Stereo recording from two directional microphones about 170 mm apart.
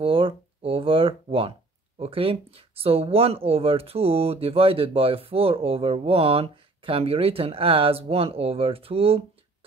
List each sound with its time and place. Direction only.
0.0 s speech: 35° right (ahead or behind)